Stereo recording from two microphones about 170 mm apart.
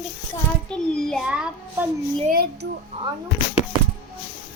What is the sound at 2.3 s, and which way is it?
Speech, 65° right (ahead or behind).